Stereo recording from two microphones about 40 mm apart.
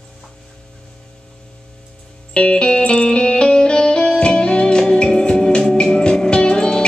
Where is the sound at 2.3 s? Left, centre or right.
Left.